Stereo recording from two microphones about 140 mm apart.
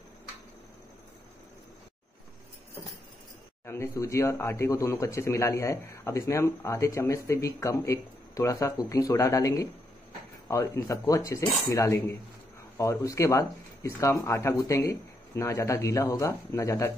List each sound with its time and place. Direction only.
3.6 s speech: 20° left (ahead or behind)